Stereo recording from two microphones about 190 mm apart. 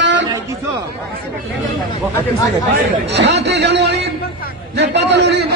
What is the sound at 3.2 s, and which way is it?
A man's voice, 60° right (ahead or behind).